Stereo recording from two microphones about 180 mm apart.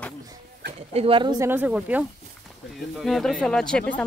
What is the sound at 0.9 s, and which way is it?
Speech, 30° right (ahead or behind).